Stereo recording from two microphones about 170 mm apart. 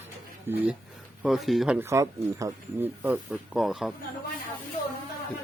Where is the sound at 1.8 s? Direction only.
15° right (ahead or behind).